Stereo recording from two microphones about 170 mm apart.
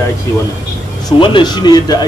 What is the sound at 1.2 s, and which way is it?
Speech, 25° left (ahead or behind).